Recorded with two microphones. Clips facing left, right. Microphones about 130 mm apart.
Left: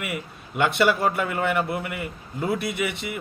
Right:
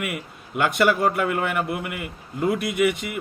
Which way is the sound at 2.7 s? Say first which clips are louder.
Right 7 dB; 50° right (ahead or behind).